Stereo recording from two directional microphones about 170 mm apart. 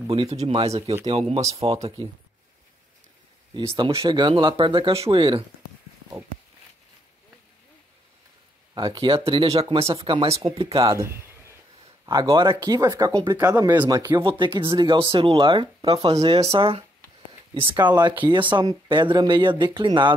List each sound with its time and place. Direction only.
0.1 s speech: 35° right (ahead or behind)
1.4 s speech: 20° right (ahead or behind)
1.7 s speech: 35° right (ahead or behind)
3.5 s speech: 25° right (ahead or behind)
8.7 s speech: 30° right (ahead or behind)
11.0 s a sound: 15° right (ahead or behind)
12.1 s speech: 25° right (ahead or behind)